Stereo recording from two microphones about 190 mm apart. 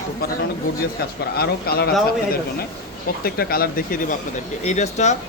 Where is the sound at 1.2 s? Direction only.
55° left (ahead or behind).